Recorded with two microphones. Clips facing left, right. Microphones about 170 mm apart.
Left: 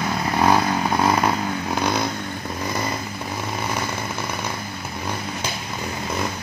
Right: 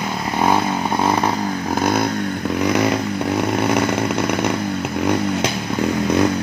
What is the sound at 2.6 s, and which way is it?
Chainsaw, 80° right.